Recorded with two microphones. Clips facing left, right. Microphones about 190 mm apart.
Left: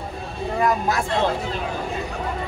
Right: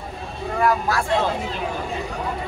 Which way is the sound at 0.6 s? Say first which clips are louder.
Right 1 dB; 20° left (ahead or behind).